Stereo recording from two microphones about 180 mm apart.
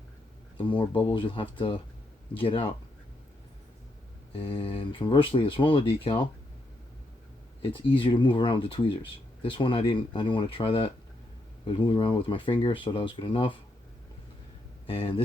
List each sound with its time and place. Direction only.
0.6 s speech: 30° left (ahead or behind)
4.4 s speech: 30° left (ahead or behind)
7.6 s speech: 30° left (ahead or behind)
14.8 s speech: 30° left (ahead or behind)